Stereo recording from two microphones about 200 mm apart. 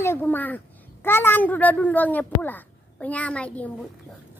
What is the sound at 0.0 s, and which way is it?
A child's voice, 10° left (ahead or behind).